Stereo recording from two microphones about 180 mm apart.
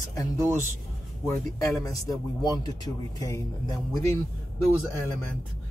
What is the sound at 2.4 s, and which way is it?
Speech, 20° left (ahead or behind).